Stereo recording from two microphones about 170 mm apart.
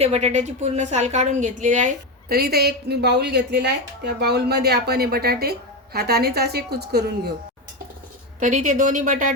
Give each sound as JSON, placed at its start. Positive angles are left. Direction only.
{"t": 0.0, "sound": "a woman's voice", "side_deg": -40}
{"t": 2.3, "sound": "a woman's voice", "side_deg": -65}
{"t": 8.4, "sound": "a woman's voice", "side_deg": -45}